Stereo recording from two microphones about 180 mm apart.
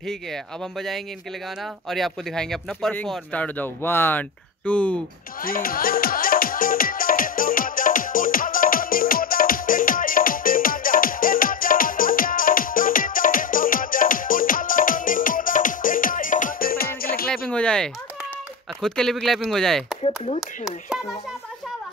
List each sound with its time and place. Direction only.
0.3 s speech: centre (ahead or behind)
5.4 s music: 50° left (ahead or behind)
17.5 s speech: 5° left (ahead or behind)